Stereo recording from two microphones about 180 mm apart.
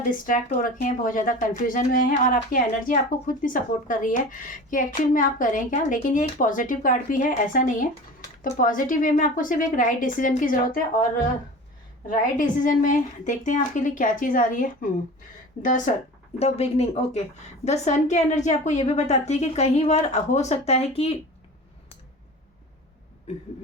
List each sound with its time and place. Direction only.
0.1 s speech: 50° left (ahead or behind)
12.0 s speech: 50° left (ahead or behind)
16.4 s a woman's voice: 35° left (ahead or behind)